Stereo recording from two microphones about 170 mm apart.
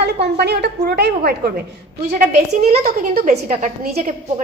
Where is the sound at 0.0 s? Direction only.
75° right (ahead or behind).